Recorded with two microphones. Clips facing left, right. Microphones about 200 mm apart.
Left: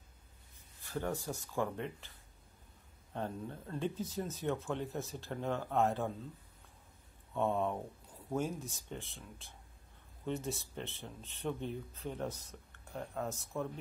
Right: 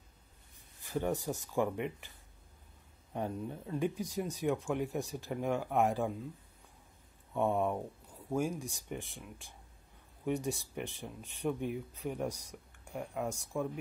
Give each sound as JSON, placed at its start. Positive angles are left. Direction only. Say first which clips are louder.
{"t": 0.8, "sound": "speech", "louder": "right 4 dB", "side_deg": -15}
{"t": 7.3, "sound": "speech", "louder": "right 2 dB", "side_deg": -15}